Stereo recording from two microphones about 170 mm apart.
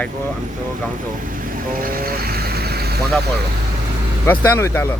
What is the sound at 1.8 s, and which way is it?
Vehicle, 60° right (ahead or behind).